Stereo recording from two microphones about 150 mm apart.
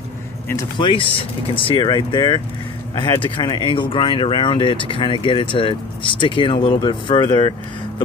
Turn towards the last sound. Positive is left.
turn(degrees=30)  # may be behind; listen again after turning